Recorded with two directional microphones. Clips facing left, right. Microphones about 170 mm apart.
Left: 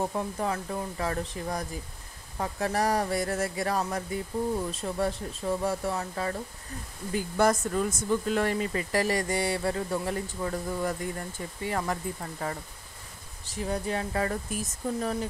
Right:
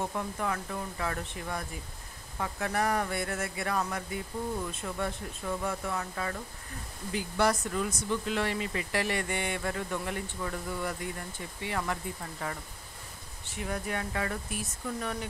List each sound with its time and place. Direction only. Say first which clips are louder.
0.0 s speech: left 3 dB; 30° left (ahead or behind)
7.1 s speech: left 3 dB; 45° left (ahead or behind)
13.6 s speech: left 4 dB; 30° left (ahead or behind)